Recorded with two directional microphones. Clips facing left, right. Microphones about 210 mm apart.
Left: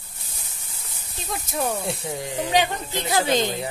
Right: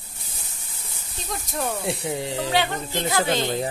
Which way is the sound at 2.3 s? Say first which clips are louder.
Left 3 dB; 15° left (ahead or behind).